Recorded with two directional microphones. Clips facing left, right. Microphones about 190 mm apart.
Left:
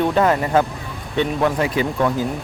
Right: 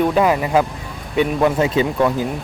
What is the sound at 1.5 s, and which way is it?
Speech, 25° right (ahead or behind).